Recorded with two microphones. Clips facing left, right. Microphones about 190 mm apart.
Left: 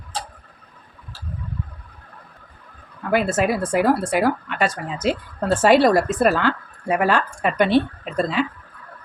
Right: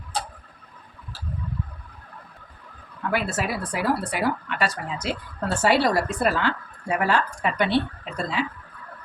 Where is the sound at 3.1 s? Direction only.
50° left (ahead or behind).